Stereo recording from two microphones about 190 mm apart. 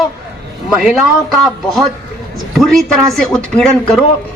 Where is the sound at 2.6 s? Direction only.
Centre (ahead or behind).